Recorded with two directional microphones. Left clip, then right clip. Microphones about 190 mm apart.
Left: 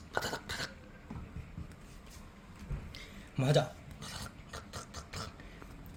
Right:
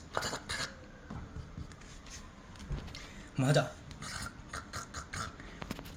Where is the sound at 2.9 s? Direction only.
15° left (ahead or behind).